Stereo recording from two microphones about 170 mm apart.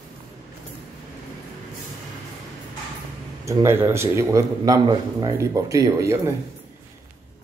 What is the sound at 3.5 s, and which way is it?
Speech, 15° right (ahead or behind).